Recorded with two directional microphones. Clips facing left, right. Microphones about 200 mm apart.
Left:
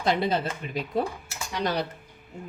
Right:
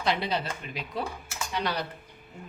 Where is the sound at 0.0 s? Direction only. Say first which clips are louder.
Left 4 dB; 50° left (ahead or behind).